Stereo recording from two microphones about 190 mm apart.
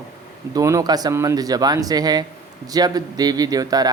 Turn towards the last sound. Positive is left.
turn(degrees=-20)  # may be behind; listen again after turning